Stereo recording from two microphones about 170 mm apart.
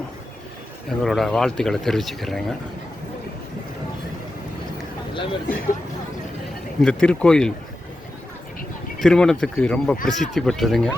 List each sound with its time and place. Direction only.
0.9 s speech: centre (ahead or behind)
5.5 s speech: 55° left (ahead or behind)
6.8 s speech: 5° left (ahead or behind)
9.0 s speech: 5° left (ahead or behind)